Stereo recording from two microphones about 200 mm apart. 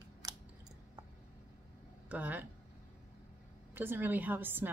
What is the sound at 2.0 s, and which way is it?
Speech, 10° right (ahead or behind).